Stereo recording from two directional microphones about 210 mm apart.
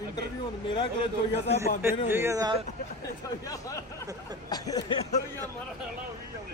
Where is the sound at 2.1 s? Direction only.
10° right (ahead or behind).